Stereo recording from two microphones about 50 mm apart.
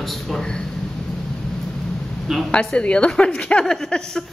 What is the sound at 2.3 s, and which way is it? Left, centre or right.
Speech, centre.